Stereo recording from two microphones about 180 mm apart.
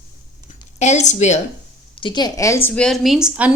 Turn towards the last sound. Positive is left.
turn(degrees=-5)  # may be behind; listen again after turning